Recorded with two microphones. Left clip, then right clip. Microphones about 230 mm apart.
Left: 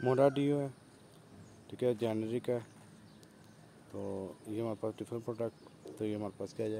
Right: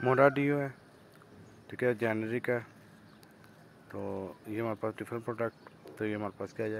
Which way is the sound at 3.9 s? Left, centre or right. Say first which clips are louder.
Right 3 dB; centre.